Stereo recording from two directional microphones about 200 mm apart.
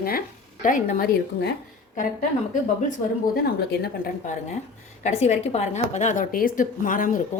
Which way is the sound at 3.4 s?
50° left (ahead or behind).